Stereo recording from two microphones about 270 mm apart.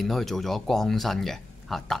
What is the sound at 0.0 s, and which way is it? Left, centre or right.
Speech, centre.